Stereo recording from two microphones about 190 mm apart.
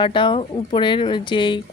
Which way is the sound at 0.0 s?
25° left (ahead or behind).